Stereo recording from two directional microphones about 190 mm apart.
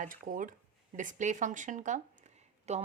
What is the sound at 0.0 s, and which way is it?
A woman's voice, 45° right (ahead or behind).